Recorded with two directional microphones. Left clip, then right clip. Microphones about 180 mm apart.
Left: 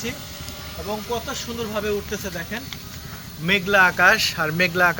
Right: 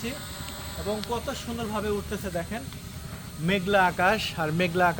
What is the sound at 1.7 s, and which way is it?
Speech, 70° right (ahead or behind).